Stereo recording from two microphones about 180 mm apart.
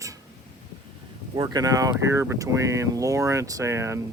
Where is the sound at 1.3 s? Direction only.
20° right (ahead or behind).